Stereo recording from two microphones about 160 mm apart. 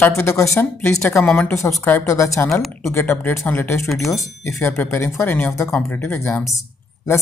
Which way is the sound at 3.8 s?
Centre (ahead or behind).